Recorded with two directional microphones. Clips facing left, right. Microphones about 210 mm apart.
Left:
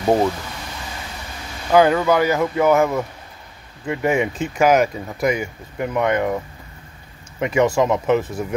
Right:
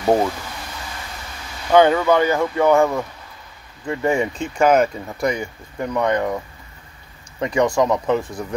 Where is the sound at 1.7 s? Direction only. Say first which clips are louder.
Right 1 dB; 5° left (ahead or behind).